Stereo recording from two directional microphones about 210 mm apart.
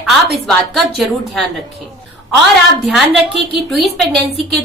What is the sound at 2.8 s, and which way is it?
A woman's voice, centre (ahead or behind).